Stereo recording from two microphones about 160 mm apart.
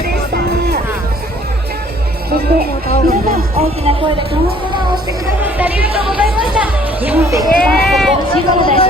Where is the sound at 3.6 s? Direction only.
40° right (ahead or behind).